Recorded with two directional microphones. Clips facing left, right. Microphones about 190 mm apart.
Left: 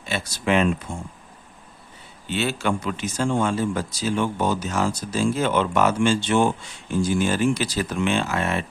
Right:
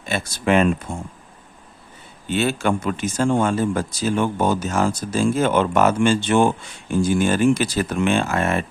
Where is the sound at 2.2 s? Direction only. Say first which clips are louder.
Right 4 dB; 50° right (ahead or behind).